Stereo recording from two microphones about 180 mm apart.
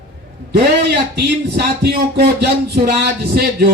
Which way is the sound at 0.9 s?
65° right (ahead or behind).